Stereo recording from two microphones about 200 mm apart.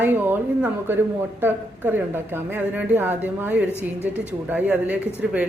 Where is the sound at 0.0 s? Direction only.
10° right (ahead or behind).